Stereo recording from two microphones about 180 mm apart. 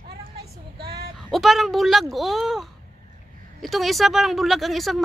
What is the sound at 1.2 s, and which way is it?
Speech, centre (ahead or behind).